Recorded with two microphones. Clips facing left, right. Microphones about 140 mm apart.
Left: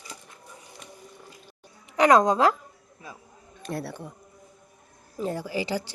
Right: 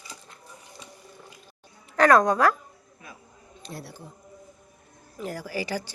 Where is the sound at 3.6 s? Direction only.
60° left (ahead or behind).